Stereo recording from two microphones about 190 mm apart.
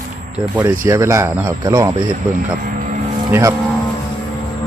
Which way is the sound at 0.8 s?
15° right (ahead or behind).